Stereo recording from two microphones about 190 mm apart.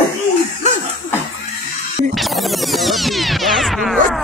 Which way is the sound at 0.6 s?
35° left (ahead or behind).